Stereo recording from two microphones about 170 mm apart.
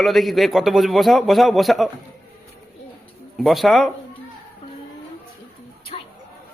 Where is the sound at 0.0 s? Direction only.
Centre (ahead or behind).